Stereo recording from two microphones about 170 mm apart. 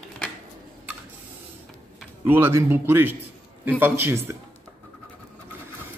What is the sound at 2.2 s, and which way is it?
A man's voice, 15° right (ahead or behind).